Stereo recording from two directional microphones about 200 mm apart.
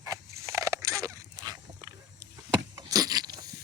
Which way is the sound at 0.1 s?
15° right (ahead or behind).